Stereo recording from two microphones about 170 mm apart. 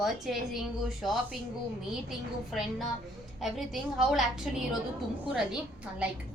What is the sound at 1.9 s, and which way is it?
A woman's voice, centre (ahead or behind).